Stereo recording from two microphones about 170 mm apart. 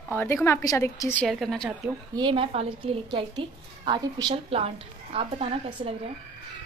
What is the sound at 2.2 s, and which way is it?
A woman's voice, 30° right (ahead or behind).